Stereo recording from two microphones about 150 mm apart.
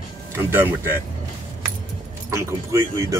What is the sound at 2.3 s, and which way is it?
Speech, 20° right (ahead or behind).